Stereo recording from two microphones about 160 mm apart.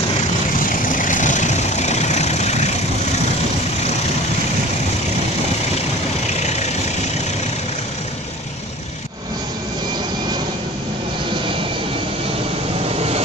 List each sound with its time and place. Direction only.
0.7 s vehicle: 55° left (ahead or behind)
6.2 s vehicle: 45° left (ahead or behind)